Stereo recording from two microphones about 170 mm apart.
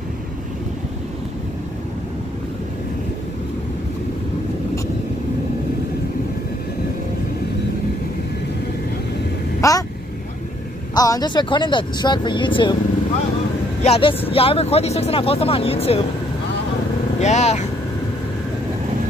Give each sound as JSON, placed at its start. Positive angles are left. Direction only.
{"t": 9.6, "sound": "a sound", "side_deg": 20}
{"t": 11.0, "sound": "speech", "side_deg": 20}
{"t": 13.8, "sound": "speech", "side_deg": 35}
{"t": 17.2, "sound": "speech", "side_deg": 40}